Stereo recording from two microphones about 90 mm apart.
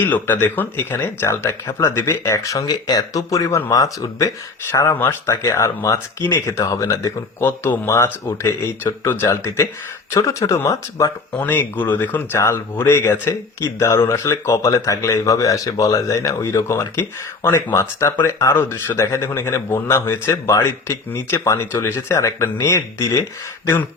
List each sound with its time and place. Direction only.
0.0 s speech: 20° left (ahead or behind)
11.3 s speech: 20° left (ahead or behind)